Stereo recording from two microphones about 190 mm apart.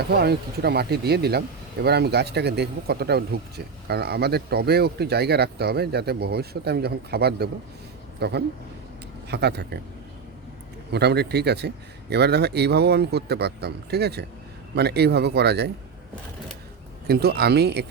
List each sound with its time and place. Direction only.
0.1 s speech: 55° right (ahead or behind)
10.9 s speech: 60° right (ahead or behind)
17.1 s speech: 55° right (ahead or behind)